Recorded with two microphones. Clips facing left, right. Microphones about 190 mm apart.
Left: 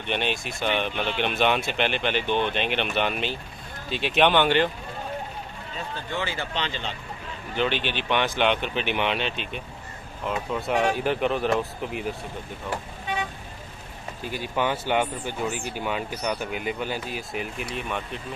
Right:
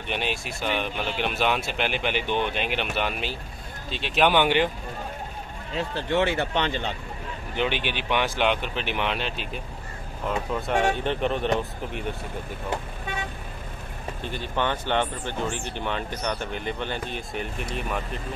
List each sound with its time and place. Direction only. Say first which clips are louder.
0.0 s speech: left 2 dB; 5° right (ahead or behind)
4.4 s speech: even; 10° right (ahead or behind)
5.8 s speech: right 7 dB; 75° right (ahead or behind); by 7.0 s 55° right (ahead or behind)
7.5 s speech: left 1 dB; 15° right (ahead or behind)
14.2 s speech: left 1 dB; 10° left (ahead or behind)